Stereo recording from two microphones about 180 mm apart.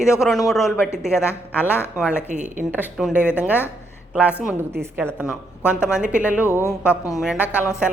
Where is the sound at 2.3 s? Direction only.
40° right (ahead or behind).